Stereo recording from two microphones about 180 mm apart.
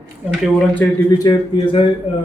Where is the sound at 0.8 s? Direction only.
15° left (ahead or behind).